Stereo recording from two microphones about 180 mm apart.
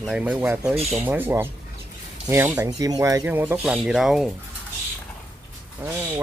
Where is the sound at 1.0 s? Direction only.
10° right (ahead or behind).